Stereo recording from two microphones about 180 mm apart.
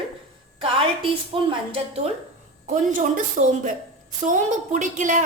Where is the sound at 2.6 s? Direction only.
45° right (ahead or behind).